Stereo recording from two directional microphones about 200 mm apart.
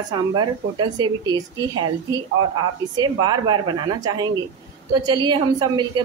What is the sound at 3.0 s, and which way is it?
A woman's voice, 20° right (ahead or behind).